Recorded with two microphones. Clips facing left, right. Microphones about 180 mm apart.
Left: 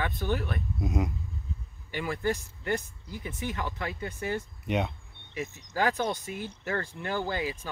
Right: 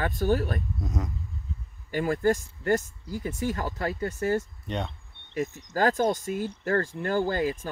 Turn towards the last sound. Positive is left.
turn(degrees=-45)  # may be behind; listen again after turning